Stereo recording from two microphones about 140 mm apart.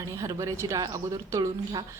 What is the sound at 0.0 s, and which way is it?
Speech, 20° right (ahead or behind).